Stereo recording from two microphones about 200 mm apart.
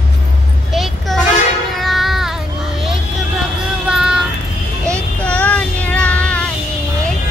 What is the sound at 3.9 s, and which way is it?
Child singing, 5° right (ahead or behind).